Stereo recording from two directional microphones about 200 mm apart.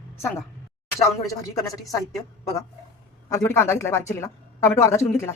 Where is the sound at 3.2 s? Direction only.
15° left (ahead or behind).